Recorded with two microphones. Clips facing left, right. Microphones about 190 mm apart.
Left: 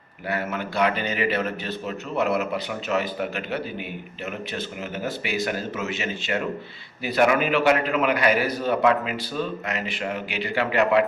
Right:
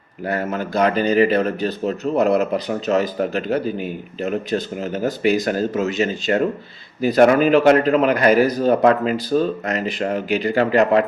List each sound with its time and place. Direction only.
0.3 s speech: 40° right (ahead or behind)